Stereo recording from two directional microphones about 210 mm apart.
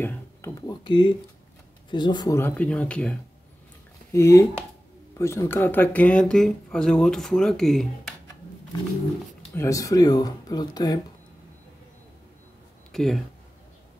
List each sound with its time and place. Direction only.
0.0 s a sound: 10° left (ahead or behind)
1.9 s speech: 20° left (ahead or behind); by 7.8 s centre (ahead or behind)
9.6 s speech: 15° left (ahead or behind)
12.9 s speech: centre (ahead or behind)